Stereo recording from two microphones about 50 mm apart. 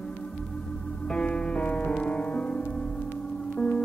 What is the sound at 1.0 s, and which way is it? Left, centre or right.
Music, left.